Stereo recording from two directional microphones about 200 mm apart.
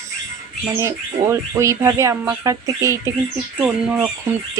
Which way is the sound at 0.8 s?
15° right (ahead or behind).